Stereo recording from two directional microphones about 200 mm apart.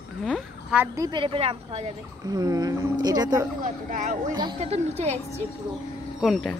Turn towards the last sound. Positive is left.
turn(degrees=0)  # may be behind; listen again after turning